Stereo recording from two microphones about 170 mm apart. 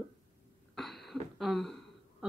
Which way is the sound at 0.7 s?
Centre (ahead or behind).